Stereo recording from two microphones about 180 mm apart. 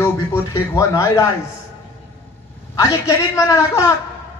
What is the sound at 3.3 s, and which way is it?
Speech, 15° left (ahead or behind).